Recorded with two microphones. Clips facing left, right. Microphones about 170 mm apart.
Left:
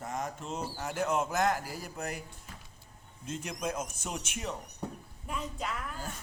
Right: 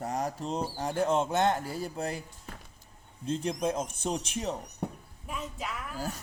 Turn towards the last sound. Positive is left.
turn(degrees=0)  # may be behind; listen again after turning